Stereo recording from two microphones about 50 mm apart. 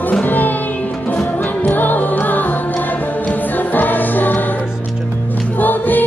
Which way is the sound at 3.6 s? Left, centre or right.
Left.